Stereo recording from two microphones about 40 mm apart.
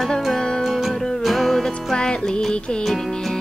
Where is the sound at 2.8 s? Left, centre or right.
Centre.